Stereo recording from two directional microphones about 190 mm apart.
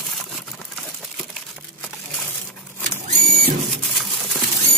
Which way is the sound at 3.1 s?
45° right (ahead or behind).